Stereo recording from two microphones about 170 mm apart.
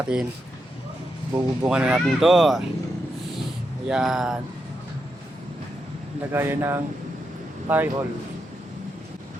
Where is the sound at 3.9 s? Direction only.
Centre (ahead or behind).